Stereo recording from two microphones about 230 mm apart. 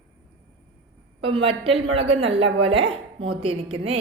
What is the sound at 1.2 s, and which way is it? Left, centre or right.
A woman's voice, right.